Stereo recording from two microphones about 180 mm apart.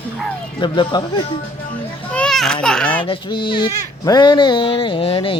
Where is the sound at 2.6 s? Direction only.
5° left (ahead or behind).